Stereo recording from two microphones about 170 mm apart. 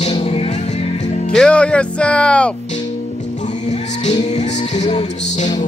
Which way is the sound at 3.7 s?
45° left (ahead or behind).